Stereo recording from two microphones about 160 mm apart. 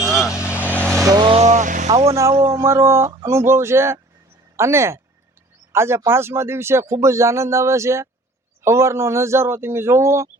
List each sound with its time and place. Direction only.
0.0 s vehicle: centre (ahead or behind)
0.3 s vehicle: 15° left (ahead or behind)
1.0 s speech: 25° right (ahead or behind)
1.4 s vehicle: 45° right (ahead or behind)
2.3 s speech: 20° right (ahead or behind)